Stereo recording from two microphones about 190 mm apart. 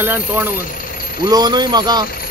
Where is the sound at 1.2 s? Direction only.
20° right (ahead or behind).